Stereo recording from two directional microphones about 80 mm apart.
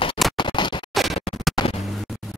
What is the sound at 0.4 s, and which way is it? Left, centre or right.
Scratch, left.